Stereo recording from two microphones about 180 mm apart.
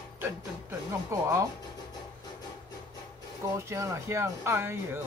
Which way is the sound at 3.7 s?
15° right (ahead or behind).